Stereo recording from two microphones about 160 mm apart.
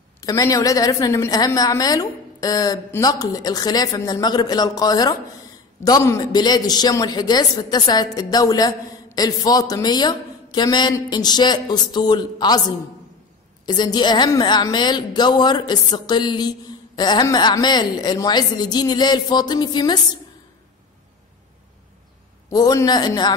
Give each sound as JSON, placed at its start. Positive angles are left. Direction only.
{"t": 0.2, "sound": "a woman's voice", "side_deg": 20}
{"t": 22.5, "sound": "a woman's voice", "side_deg": 25}